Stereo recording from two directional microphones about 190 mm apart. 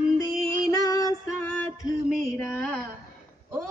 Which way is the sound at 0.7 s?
20° left (ahead or behind).